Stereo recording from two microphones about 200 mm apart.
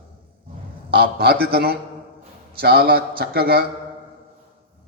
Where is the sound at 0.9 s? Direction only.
50° right (ahead or behind).